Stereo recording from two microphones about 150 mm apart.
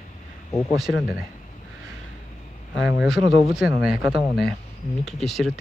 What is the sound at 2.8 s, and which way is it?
Speech, 5° right (ahead or behind).